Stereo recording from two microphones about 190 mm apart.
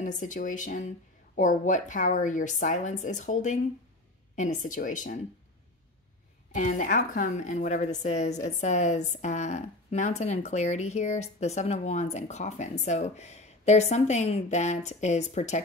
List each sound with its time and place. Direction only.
0.0 s speech: 40° left (ahead or behind)
6.5 s speech: 40° left (ahead or behind)